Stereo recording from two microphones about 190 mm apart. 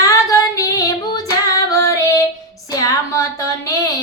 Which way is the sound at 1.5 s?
15° left (ahead or behind).